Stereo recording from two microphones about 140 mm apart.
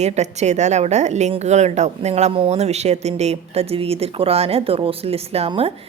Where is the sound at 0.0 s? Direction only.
55° right (ahead or behind).